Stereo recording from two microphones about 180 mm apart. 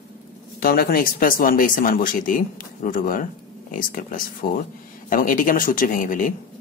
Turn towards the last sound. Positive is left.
turn(degrees=50)  # may be behind; listen again after turning